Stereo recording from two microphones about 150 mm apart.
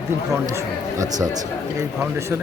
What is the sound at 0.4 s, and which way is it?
Speech, 20° right (ahead or behind).